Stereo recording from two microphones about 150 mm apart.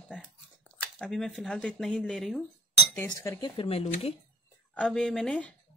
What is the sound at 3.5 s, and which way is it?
Speech, 40° left (ahead or behind).